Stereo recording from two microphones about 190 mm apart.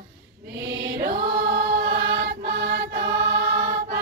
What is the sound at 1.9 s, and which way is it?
Music, 55° right (ahead or behind).